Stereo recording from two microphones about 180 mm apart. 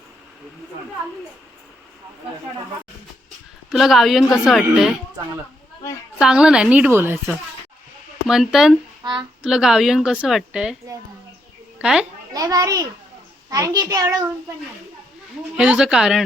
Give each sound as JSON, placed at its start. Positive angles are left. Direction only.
{"t": 3.7, "sound": "a woman's voice", "side_deg": 0}
{"t": 6.1, "sound": "a woman's voice", "side_deg": -5}
{"t": 8.3, "sound": "a woman's voice", "side_deg": 0}
{"t": 11.8, "sound": "a child's voice", "side_deg": -5}
{"t": 12.3, "sound": "a child's voice", "side_deg": -20}
{"t": 15.5, "sound": "a woman's voice", "side_deg": -5}